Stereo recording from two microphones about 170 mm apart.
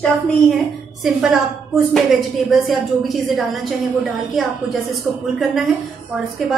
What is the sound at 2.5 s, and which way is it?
A woman's voice, centre (ahead or behind).